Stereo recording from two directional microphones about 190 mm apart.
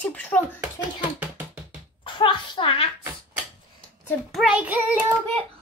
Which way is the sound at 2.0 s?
25° left (ahead or behind).